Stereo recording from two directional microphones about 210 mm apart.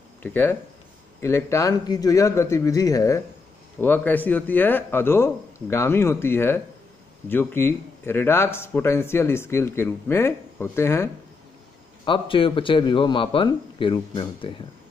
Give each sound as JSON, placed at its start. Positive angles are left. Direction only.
{"t": 0.2, "sound": "speech", "side_deg": 10}
{"t": 12.0, "sound": "a man's voice", "side_deg": 25}